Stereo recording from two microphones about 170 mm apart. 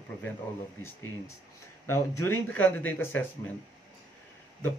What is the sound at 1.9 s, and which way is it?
Speech, 15° left (ahead or behind).